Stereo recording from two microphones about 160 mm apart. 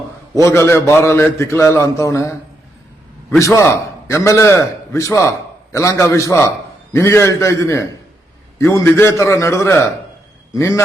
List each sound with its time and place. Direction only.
0.4 s a man's voice: 15° left (ahead or behind)